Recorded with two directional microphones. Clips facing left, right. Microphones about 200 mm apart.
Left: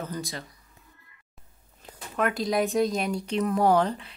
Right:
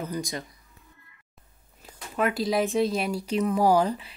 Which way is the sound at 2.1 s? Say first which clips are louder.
Right 1 dB; 5° right (ahead or behind).